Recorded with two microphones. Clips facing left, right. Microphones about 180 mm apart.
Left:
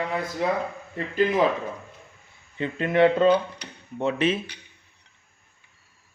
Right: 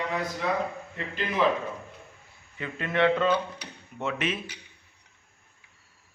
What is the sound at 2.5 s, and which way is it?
Speech, 30° left (ahead or behind).